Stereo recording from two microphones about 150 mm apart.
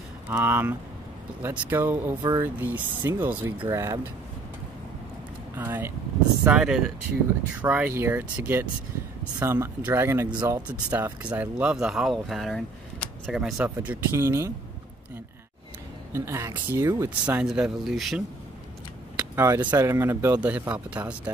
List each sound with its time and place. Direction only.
0.3 s speech: 15° right (ahead or behind)
5.6 s speech: 15° right (ahead or behind)
16.1 s speech: 15° right (ahead or behind)
17.4 s speech: 5° right (ahead or behind)
19.1 s speech: 15° right (ahead or behind)